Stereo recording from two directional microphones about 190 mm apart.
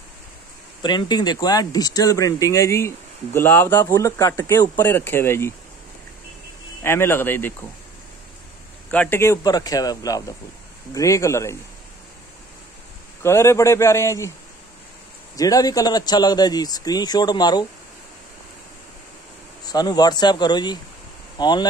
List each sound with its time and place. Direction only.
0.8 s speech: 20° left (ahead or behind)
6.8 s speech: 10° left (ahead or behind)
8.9 s speech: 10° left (ahead or behind)
13.2 s speech: 15° left (ahead or behind)
15.3 s speech: 20° left (ahead or behind)
19.6 s speech: 20° left (ahead or behind)